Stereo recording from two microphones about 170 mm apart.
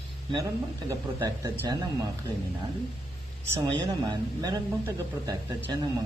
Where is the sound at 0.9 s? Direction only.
20° right (ahead or behind).